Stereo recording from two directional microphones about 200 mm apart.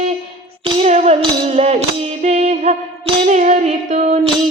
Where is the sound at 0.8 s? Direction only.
30° right (ahead or behind).